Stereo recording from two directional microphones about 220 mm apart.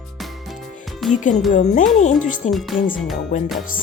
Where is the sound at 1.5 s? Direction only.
35° left (ahead or behind).